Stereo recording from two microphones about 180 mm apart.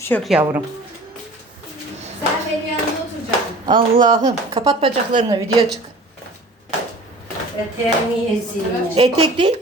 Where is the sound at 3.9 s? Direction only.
45° right (ahead or behind).